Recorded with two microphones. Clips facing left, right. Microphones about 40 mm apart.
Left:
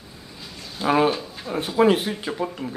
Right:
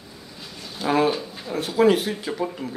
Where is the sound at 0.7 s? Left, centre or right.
Centre.